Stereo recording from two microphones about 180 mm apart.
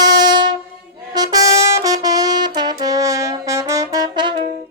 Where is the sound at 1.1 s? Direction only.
20° right (ahead or behind).